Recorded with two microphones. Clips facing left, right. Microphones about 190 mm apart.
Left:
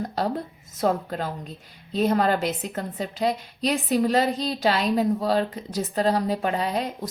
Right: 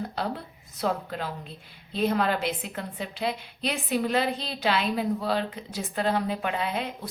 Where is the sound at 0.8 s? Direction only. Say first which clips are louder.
Left 5 dB; 40° left (ahead or behind).